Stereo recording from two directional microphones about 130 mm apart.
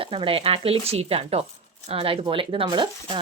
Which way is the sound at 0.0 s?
45° right (ahead or behind).